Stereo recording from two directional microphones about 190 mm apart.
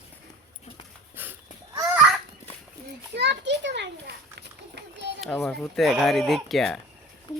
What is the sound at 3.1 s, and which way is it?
Children playing, 65° right (ahead or behind).